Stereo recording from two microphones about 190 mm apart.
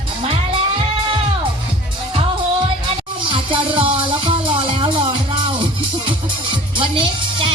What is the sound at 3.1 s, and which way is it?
Music, 25° right (ahead or behind).